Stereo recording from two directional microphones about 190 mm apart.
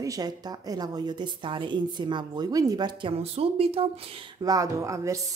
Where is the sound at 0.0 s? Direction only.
20° right (ahead or behind).